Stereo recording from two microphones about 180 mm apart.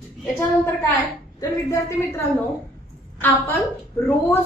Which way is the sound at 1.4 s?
15° left (ahead or behind).